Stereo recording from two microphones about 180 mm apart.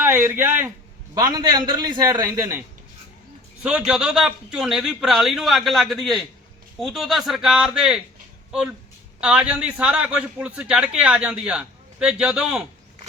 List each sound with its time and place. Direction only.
0.0 s a man's voice: 10° right (ahead or behind)
3.6 s a man's voice: 5° right (ahead or behind)
9.2 s a man's voice: 5° right (ahead or behind)